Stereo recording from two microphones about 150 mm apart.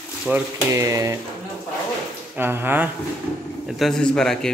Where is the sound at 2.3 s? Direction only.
15° right (ahead or behind).